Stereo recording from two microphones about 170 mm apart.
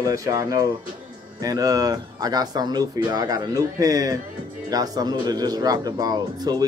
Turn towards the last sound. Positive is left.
turn(degrees=-25)  # may be behind; listen again after turning